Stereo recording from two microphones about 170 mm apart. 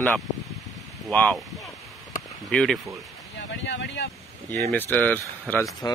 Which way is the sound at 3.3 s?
90° left.